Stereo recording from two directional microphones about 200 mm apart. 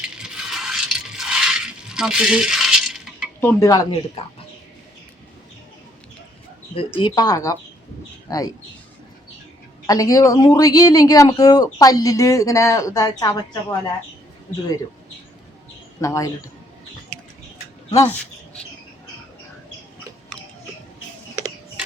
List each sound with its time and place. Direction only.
0.0 s coin: 5° right (ahead or behind)
3.4 s speech: 15° left (ahead or behind)
6.7 s speech: 25° left (ahead or behind)
9.8 s speech: 15° left (ahead or behind)
16.0 s speech: 15° left (ahead or behind)